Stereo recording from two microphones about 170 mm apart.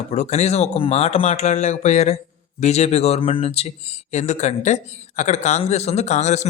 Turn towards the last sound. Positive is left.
turn(degrees=40)  # may be behind; listen again after turning